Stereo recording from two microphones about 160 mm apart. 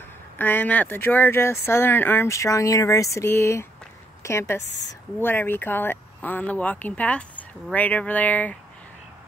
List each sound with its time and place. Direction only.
0.4 s a woman's voice: 10° left (ahead or behind)
4.6 s a woman's voice: 90° left
5.2 s speech: 15° left (ahead or behind)